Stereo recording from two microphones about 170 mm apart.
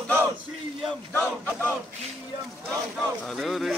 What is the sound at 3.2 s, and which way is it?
Speech, centre (ahead or behind).